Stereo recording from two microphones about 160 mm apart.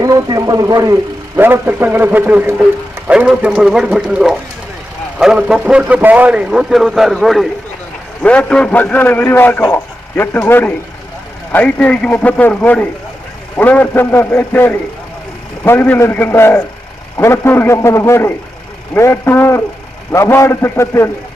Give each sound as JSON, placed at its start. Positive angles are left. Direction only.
{"t": 0.0, "sound": "a man's voice", "side_deg": -20}